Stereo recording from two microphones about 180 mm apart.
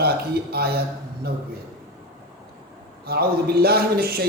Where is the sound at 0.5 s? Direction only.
60° right (ahead or behind).